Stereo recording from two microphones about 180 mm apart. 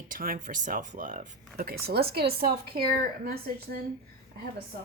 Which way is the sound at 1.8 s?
60° right (ahead or behind).